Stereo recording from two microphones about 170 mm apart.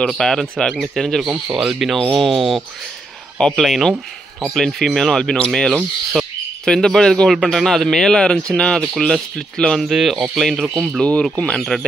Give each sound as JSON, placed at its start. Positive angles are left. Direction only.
{"t": 0.1, "sound": "speech", "side_deg": 5}